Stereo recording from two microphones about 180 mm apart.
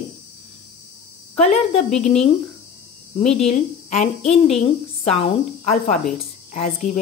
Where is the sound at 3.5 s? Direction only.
40° left (ahead or behind).